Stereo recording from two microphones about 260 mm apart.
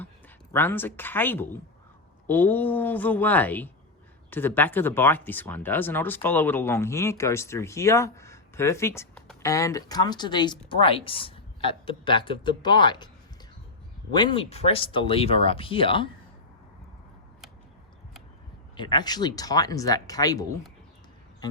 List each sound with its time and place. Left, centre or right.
0.5 s speech: centre
9.5 s speech: centre
14.1 s speech: centre
18.8 s speech: centre